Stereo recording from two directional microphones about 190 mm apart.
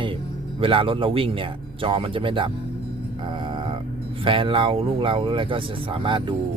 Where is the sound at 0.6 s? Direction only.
30° right (ahead or behind).